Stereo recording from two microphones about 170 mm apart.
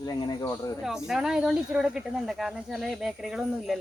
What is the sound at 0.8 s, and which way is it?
Speech, centre (ahead or behind).